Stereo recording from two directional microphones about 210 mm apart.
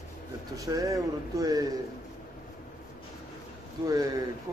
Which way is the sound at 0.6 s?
15° right (ahead or behind).